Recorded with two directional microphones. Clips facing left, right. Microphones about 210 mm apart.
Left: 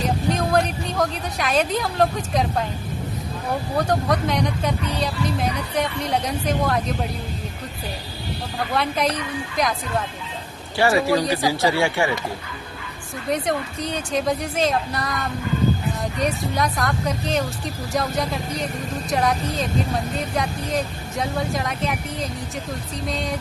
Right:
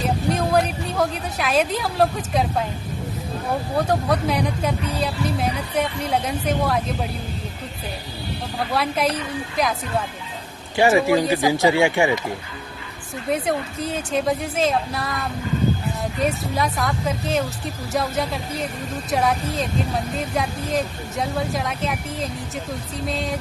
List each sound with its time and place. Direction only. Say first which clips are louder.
0.3 s a woman's voice: right 1 dB; 5° right (ahead or behind)
3.8 s speech: even; 5° right (ahead or behind)
8.7 s speech: even; 5° right (ahead or behind)
10.8 s speech: right 2 dB; 20° right (ahead or behind)
13.3 s speech: right 1 dB; 5° right (ahead or behind)
16.2 s speech: right 1 dB; centre (ahead or behind)